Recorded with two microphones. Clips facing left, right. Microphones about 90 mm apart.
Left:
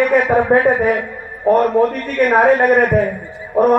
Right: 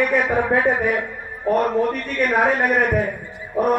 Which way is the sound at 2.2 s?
35° left (ahead or behind).